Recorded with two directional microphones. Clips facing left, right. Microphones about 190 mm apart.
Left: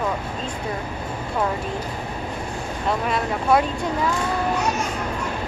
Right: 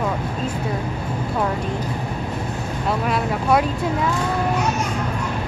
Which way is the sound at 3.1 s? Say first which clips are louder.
Right 1 dB; centre (ahead or behind).